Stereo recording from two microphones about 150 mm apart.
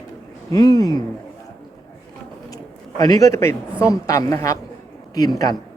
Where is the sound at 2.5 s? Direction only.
25° left (ahead or behind).